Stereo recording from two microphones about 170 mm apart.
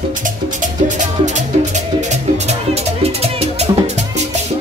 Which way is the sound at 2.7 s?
35° right (ahead or behind).